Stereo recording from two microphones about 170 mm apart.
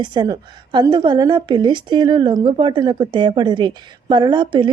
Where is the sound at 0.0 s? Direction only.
25° right (ahead or behind).